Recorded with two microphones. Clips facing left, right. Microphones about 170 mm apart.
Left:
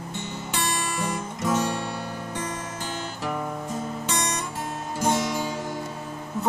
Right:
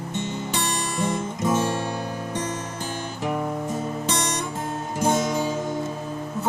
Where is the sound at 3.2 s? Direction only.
15° right (ahead or behind).